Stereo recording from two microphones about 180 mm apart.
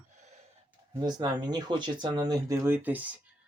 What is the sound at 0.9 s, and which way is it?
Speech, 25° right (ahead or behind).